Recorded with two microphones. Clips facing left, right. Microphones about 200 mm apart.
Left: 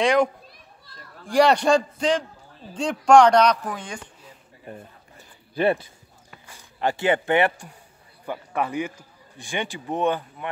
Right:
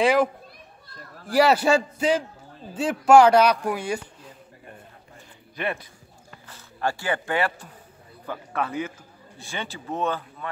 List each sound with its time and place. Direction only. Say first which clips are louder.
0.0 s a man's voice: even; 5° right (ahead or behind)
1.3 s a man's voice: left 1 dB; 5° right (ahead or behind)
5.5 s speech: left 8 dB; 30° left (ahead or behind)
6.4 s a man's voice: left 2 dB; 15° left (ahead or behind)